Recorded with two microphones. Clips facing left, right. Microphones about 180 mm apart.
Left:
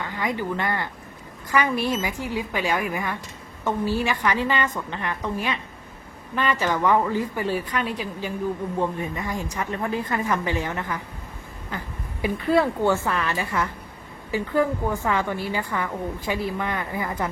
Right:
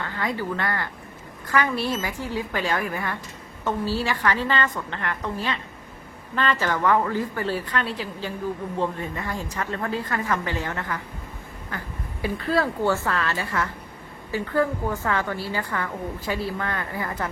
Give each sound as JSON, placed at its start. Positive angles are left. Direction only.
{"t": 0.0, "sound": "a woman's voice", "side_deg": 15}
{"t": 12.2, "sound": "a woman's voice", "side_deg": 20}